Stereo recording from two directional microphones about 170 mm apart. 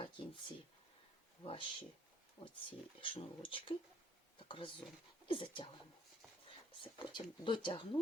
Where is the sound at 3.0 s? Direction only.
30° left (ahead or behind).